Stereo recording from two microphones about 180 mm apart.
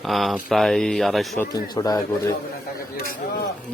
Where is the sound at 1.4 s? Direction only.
20° left (ahead or behind).